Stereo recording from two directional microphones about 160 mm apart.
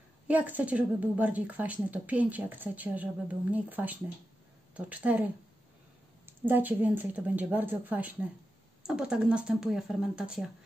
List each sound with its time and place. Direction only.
0.3 s a woman's voice: 10° right (ahead or behind)